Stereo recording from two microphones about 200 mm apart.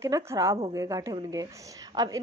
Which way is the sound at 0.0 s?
15° right (ahead or behind).